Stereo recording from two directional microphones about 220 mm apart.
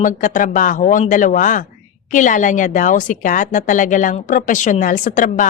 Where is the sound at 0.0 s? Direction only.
35° left (ahead or behind).